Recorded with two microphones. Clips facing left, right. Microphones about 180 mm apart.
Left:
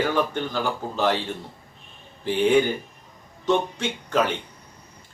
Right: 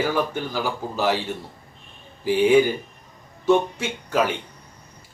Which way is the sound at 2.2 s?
10° right (ahead or behind).